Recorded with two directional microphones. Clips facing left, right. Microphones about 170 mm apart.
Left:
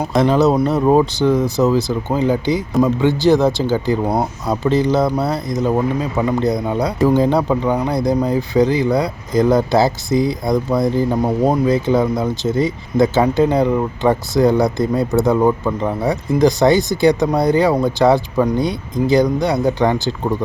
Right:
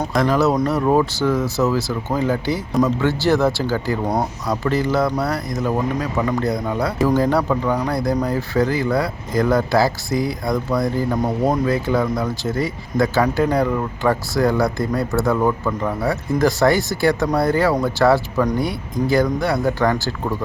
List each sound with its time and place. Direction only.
0.1 s speech: 25° left (ahead or behind)